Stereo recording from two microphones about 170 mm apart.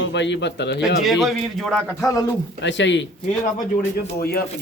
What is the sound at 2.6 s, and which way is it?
Speech, 90° left.